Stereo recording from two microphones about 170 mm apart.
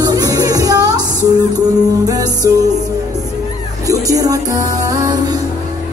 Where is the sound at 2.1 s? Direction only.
20° right (ahead or behind).